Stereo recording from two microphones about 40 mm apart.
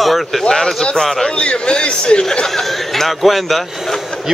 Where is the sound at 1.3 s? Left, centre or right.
Left; by 3.6 s centre.